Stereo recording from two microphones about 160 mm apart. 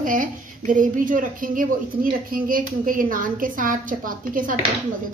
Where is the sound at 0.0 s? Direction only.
55° right (ahead or behind).